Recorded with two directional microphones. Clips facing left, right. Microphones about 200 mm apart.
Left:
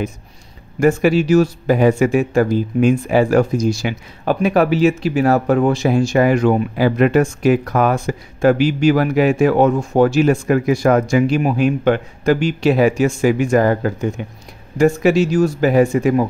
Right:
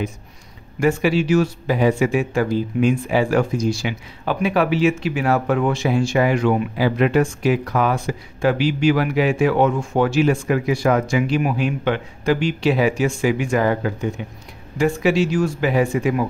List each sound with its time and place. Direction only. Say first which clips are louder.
0.7 s speech: left 4 dB; 45° left (ahead or behind)